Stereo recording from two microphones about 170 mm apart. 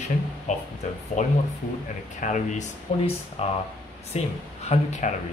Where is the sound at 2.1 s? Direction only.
45° left (ahead or behind).